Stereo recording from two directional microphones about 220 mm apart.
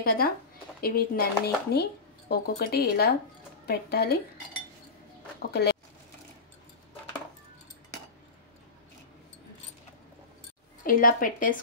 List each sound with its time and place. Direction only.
0.0 s a woman's voice: 40° left (ahead or behind)
5.5 s speech: 45° left (ahead or behind)
10.8 s a woman's voice: 40° left (ahead or behind)